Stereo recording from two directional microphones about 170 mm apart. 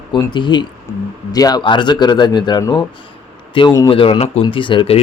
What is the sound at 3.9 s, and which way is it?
Speech, 35° left (ahead or behind).